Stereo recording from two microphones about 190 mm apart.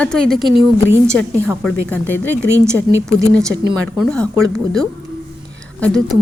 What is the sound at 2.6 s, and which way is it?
Speech, 15° right (ahead or behind).